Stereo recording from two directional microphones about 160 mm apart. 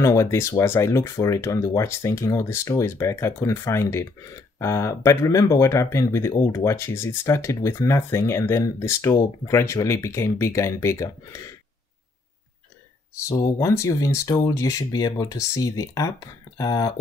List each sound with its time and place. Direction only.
0.0 s speech: 20° left (ahead or behind)
13.3 s speech: 20° left (ahead or behind)